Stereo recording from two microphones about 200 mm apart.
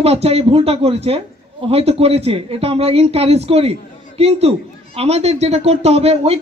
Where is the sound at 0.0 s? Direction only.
30° right (ahead or behind).